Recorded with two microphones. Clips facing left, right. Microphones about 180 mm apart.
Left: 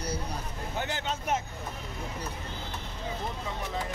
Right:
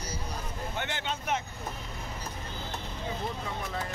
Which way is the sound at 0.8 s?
35° left (ahead or behind).